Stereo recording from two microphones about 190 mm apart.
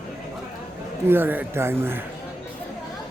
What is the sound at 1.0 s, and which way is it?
Speech, 10° right (ahead or behind).